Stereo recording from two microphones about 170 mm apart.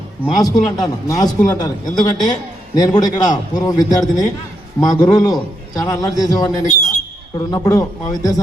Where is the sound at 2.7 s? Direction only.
25° left (ahead or behind).